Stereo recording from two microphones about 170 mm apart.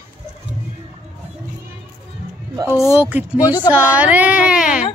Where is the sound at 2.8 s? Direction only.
5° right (ahead or behind).